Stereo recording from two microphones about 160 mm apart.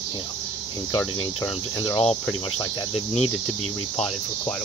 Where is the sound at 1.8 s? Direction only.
35° left (ahead or behind).